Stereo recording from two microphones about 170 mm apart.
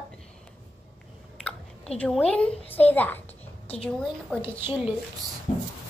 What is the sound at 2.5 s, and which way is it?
Speech, 35° left (ahead or behind).